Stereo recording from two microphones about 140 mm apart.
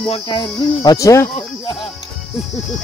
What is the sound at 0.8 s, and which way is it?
Speech, 25° left (ahead or behind).